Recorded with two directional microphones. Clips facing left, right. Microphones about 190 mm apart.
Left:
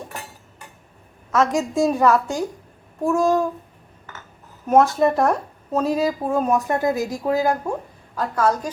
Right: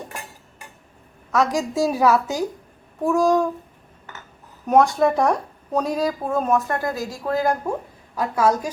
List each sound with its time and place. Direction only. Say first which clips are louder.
1.3 s speech: left 1 dB; centre (ahead or behind)
4.6 s speech: left 1 dB; centre (ahead or behind); by 7.3 s 20° left (ahead or behind)
7.3 s speech: right 1 dB; 5° left (ahead or behind)
8.1 s a woman's voice: right 1 dB; 10° right (ahead or behind)